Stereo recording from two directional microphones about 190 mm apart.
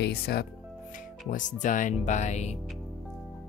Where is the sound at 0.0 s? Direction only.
55° left (ahead or behind).